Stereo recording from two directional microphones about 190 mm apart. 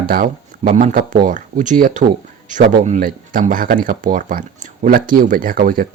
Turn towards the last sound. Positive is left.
turn(degrees=-45)  # may be behind; listen again after turning